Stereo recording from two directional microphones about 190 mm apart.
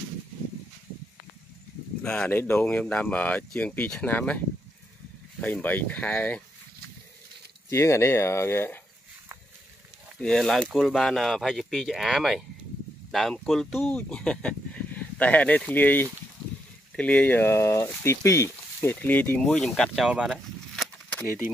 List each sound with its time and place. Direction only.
2.0 s speech: 10° left (ahead or behind)
5.4 s speech: 10° left (ahead or behind)
7.7 s speech: 15° left (ahead or behind)
10.2 s speech: centre (ahead or behind)